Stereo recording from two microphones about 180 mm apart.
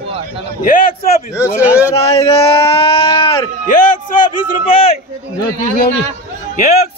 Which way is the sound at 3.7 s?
45° left (ahead or behind).